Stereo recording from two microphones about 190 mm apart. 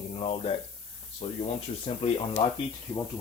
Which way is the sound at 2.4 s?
30° left (ahead or behind).